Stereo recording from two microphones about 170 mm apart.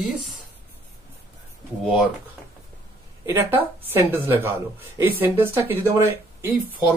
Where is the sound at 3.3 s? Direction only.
15° right (ahead or behind).